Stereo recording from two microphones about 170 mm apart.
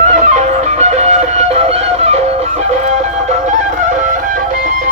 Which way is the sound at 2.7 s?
40° right (ahead or behind).